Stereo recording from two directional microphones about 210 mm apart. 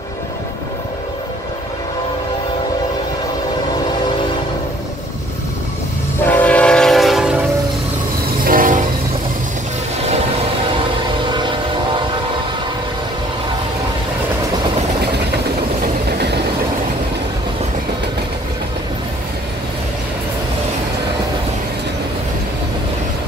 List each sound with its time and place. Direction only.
6.3 s train: 5° left (ahead or behind)
8.5 s train: 40° right (ahead or behind)
11.3 s vehicle: 20° right (ahead or behind)
15.3 s train: 50° right (ahead or behind)